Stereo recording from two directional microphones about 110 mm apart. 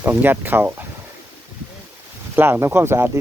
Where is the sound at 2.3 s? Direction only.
20° right (ahead or behind).